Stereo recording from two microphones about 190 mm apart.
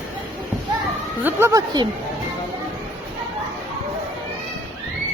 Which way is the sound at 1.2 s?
15° right (ahead or behind).